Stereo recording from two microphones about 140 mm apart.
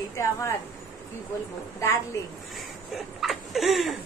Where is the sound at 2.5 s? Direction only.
Centre (ahead or behind).